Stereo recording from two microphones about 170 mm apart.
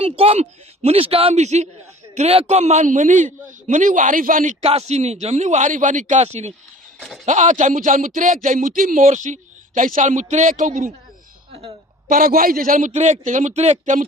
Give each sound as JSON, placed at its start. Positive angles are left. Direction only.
{"t": 0.0, "sound": "a man's voice", "side_deg": -35}
{"t": 11.5, "sound": "a sound", "side_deg": -35}
{"t": 12.1, "sound": "a man's voice", "side_deg": -55}